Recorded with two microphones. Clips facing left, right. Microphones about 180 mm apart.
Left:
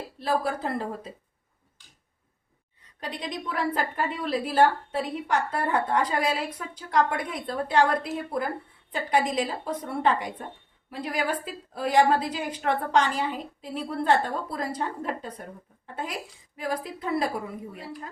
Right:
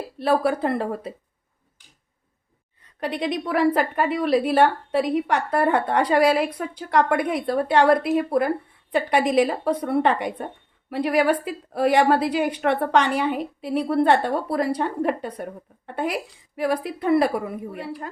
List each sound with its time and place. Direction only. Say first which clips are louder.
0.2 s a woman's voice: right 7 dB; 65° right (ahead or behind)
3.0 s a woman's voice: right 8 dB; 65° right (ahead or behind)